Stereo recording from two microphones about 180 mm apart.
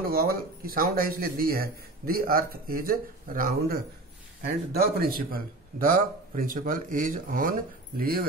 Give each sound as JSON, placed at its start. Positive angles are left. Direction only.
{"t": 0.1, "sound": "a man's voice", "side_deg": -55}